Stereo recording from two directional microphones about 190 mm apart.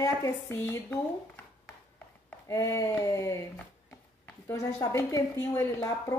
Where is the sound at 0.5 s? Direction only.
10° left (ahead or behind).